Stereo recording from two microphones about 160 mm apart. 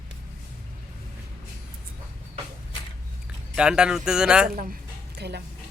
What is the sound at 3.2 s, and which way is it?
Speech, 5° right (ahead or behind).